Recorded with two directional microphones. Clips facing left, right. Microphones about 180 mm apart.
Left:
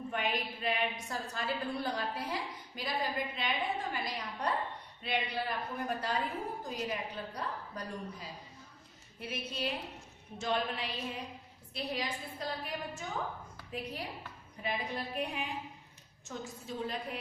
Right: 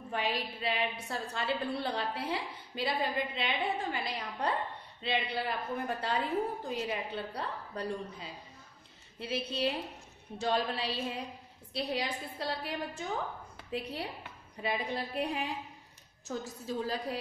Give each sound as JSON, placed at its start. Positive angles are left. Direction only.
{"t": 0.1, "sound": "a woman's voice", "side_deg": -30}
{"t": 14.6, "sound": "a woman's voice", "side_deg": -35}